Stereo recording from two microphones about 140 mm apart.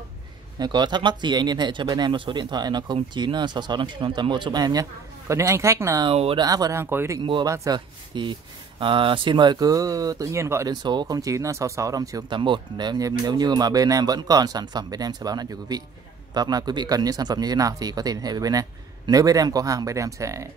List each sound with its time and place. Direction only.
0.6 s speech: 30° right (ahead or behind)
6.0 s speech: 40° right (ahead or behind)
6.4 s speech: 25° right (ahead or behind)